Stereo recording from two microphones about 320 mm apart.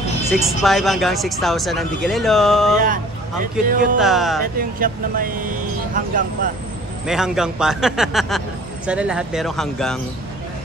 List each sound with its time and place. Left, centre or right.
0.3 s speech: centre
3.6 s speech: right
4.0 s speech: centre
4.6 s speech: right
7.1 s speech: centre